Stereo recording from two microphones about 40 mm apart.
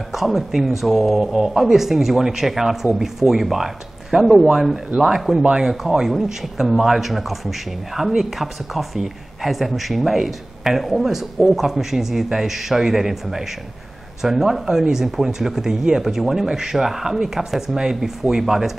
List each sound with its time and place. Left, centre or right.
0.1 s speech: centre